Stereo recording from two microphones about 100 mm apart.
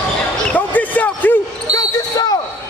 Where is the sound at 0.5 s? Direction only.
15° left (ahead or behind).